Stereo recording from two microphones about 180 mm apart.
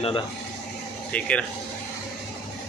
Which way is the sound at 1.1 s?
5° left (ahead or behind).